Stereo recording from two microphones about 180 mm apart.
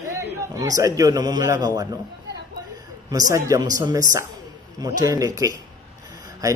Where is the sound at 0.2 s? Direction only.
20° right (ahead or behind).